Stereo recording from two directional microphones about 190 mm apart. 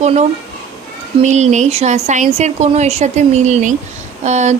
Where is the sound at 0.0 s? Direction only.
35° right (ahead or behind).